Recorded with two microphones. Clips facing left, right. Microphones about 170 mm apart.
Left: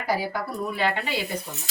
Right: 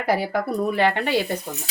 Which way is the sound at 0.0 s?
60° right (ahead or behind).